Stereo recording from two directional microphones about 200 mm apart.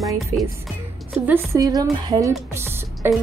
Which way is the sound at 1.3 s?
15° right (ahead or behind).